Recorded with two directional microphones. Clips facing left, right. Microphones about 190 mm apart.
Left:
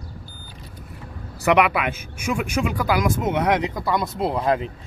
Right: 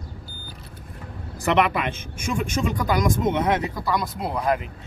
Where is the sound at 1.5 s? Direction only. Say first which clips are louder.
Left 1 dB; 10° left (ahead or behind).